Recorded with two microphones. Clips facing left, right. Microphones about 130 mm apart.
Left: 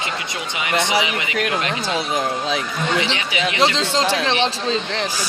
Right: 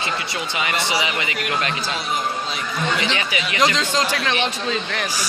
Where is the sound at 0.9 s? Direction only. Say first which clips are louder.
Left 2 dB; 20° left (ahead or behind).